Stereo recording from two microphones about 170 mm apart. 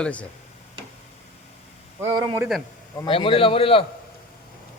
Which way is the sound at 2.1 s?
30° right (ahead or behind).